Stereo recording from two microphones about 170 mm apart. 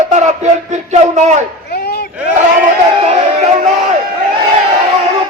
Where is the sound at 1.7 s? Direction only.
70° left (ahead or behind).